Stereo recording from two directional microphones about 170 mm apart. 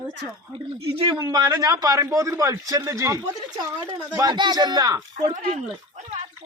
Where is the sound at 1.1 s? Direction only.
20° right (ahead or behind).